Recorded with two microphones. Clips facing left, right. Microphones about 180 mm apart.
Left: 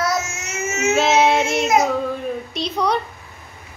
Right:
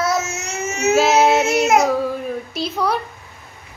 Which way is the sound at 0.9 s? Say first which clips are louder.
Right 2 dB; centre (ahead or behind).